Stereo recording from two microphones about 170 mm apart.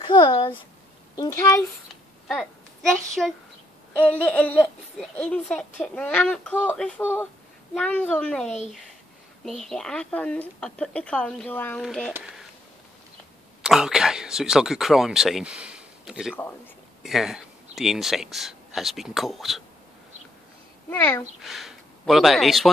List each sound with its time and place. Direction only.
0.0 s a child's voice: 30° left (ahead or behind)
2.2 s a woman's voice: centre (ahead or behind)
9.7 s speech: 5° left (ahead or behind)
13.6 s speech: 5° right (ahead or behind)
20.9 s speech: 15° left (ahead or behind)
21.4 s speech: centre (ahead or behind)